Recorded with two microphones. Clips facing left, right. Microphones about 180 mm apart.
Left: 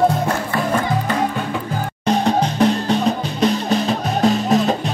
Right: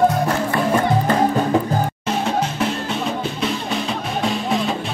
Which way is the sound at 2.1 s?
35° left (ahead or behind).